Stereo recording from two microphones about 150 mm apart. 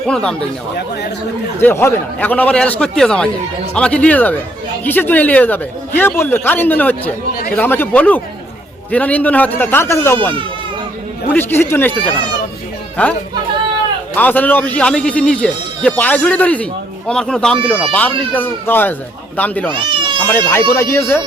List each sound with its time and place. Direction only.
0.1 s speech: 5° left (ahead or behind)
1.6 s a man's voice: 15° left (ahead or behind)
11.3 s a man's voice: 15° left (ahead or behind)
14.2 s a man's voice: 10° left (ahead or behind)
19.7 s speech: 35° right (ahead or behind)
20.1 s speech: 10° left (ahead or behind)